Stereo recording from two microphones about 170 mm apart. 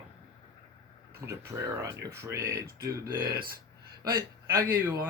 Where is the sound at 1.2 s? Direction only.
15° right (ahead or behind).